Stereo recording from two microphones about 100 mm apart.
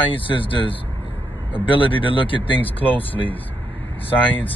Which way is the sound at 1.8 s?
60° left (ahead or behind).